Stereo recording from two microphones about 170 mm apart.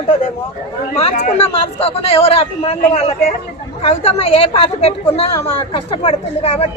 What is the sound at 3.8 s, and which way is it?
A man's voice, 35° left (ahead or behind).